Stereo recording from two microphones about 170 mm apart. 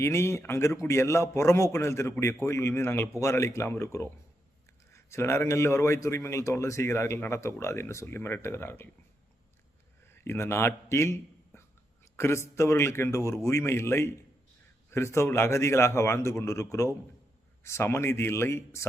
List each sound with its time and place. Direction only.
0.0 s a man's voice: 15° left (ahead or behind)
10.2 s a man's voice: 15° left (ahead or behind)